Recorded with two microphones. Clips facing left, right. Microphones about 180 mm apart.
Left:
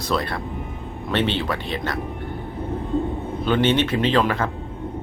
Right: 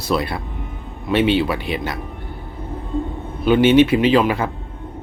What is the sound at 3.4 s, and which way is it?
Speech, 10° right (ahead or behind).